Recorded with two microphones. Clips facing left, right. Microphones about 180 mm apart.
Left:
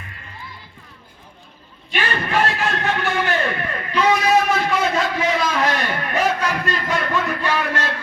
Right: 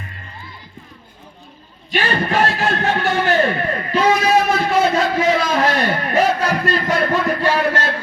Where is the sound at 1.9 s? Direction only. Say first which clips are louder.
Right 3 dB; 40° right (ahead or behind).